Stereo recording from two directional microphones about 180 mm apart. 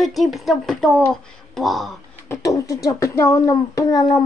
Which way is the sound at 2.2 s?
15° left (ahead or behind).